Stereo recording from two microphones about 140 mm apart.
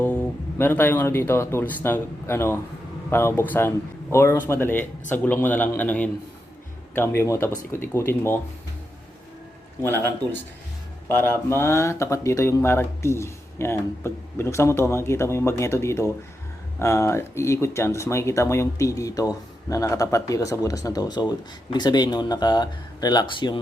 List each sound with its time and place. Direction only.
0.0 s speech: 10° left (ahead or behind)
9.8 s speech: 15° left (ahead or behind); by 23.6 s 35° left (ahead or behind)